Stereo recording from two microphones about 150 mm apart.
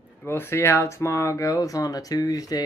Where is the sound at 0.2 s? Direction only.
15° left (ahead or behind).